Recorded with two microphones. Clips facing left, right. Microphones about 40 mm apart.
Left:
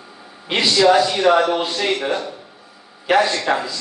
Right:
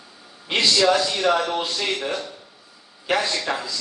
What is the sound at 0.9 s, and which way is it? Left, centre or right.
A man's voice, left.